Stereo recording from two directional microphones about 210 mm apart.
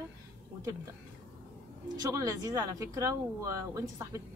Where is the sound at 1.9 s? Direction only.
15° right (ahead or behind).